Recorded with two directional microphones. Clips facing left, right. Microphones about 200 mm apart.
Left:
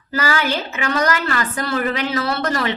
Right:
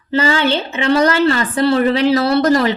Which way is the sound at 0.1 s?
25° right (ahead or behind).